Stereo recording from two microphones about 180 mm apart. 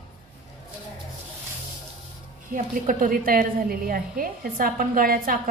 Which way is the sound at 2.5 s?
45° right (ahead or behind).